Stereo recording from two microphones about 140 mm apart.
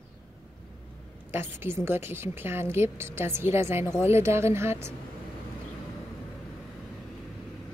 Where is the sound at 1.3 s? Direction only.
15° right (ahead or behind).